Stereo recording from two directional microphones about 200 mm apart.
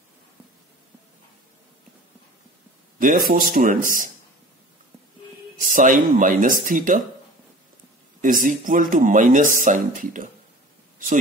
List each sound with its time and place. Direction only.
3.0 s speech: 45° right (ahead or behind)
5.6 s speech: 40° right (ahead or behind)
8.2 s speech: 40° right (ahead or behind)